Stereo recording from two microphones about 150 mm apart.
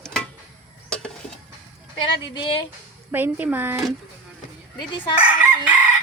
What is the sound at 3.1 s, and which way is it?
Speech, 15° right (ahead or behind).